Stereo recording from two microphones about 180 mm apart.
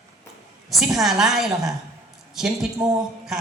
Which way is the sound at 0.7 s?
Centre (ahead or behind).